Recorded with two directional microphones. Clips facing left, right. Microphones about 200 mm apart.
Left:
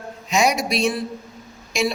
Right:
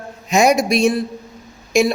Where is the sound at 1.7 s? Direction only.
50° right (ahead or behind).